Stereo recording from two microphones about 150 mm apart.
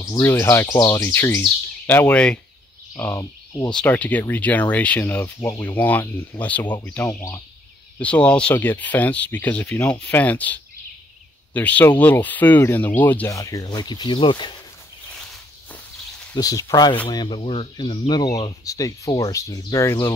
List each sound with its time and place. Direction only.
0.2 s speech: 15° left (ahead or behind)
3.0 s speech: 20° left (ahead or behind)
3.7 s speech: 10° left (ahead or behind); by 14.5 s 30° left (ahead or behind)
16.3 s speech: 25° left (ahead or behind)